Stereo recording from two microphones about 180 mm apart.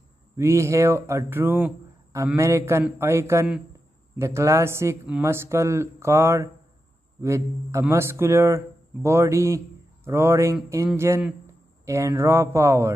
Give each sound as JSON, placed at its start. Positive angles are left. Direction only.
{"t": 0.4, "sound": "speech", "side_deg": -15}